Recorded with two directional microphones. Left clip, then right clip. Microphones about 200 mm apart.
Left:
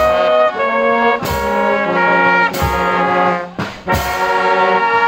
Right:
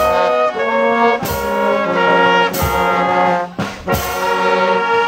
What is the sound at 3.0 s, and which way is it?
Brass instrument, 20° right (ahead or behind).